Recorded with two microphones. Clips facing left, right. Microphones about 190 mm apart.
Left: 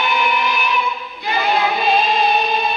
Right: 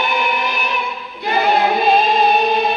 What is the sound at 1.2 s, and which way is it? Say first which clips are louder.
Choir: right 3 dB; 60° right (ahead or behind).